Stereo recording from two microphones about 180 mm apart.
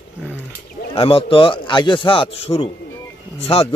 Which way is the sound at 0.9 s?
30° left (ahead or behind).